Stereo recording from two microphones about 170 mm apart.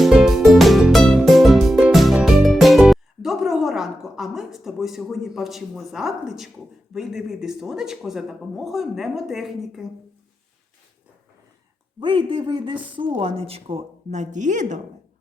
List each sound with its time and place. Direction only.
0.0 s music: centre (ahead or behind)
6.9 s speech: 5° right (ahead or behind)
11.9 s a man's voice: 30° right (ahead or behind); by 14.8 s 45° right (ahead or behind)